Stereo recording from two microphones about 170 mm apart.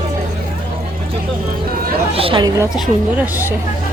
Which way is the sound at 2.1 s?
30° right (ahead or behind).